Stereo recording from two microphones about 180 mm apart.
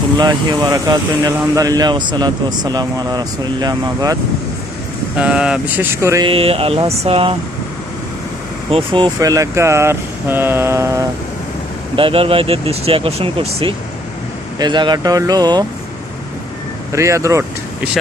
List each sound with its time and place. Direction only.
0.2 s speech: 25° right (ahead or behind)
5.1 s speech: 5° right (ahead or behind)
6.2 s speech: 30° right (ahead or behind)
8.7 s speech: 30° right (ahead or behind)
9.1 s speech: 20° right (ahead or behind)
11.9 s speech: 30° right (ahead or behind)
16.9 s speech: 15° right (ahead or behind)